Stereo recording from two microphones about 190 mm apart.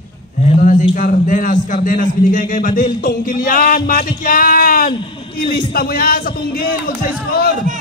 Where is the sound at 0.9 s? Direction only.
45° left (ahead or behind).